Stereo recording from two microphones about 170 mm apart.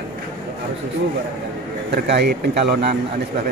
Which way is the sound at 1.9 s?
75° right (ahead or behind).